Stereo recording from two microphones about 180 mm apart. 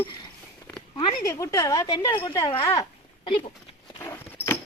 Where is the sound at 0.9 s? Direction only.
25° left (ahead or behind).